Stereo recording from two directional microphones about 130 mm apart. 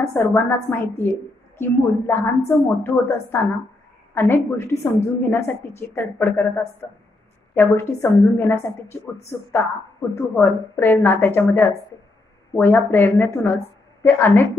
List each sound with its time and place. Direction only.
0.1 s a woman's voice: 15° left (ahead or behind)
10.1 s a woman's voice: 15° left (ahead or behind)